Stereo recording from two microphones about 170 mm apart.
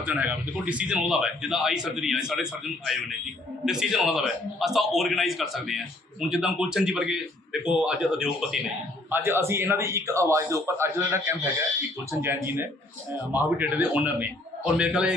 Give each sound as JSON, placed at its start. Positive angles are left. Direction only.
{"t": 0.0, "sound": "a man's voice", "side_deg": -10}